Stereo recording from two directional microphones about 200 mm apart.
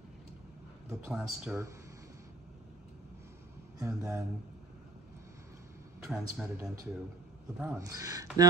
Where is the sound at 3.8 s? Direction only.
15° right (ahead or behind).